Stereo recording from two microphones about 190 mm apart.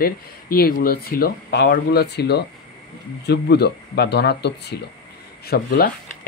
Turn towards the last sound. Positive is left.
turn(degrees=50)  # may be behind; listen again after turning